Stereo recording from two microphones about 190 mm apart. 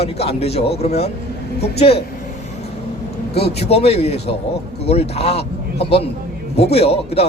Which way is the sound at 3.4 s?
35° left (ahead or behind).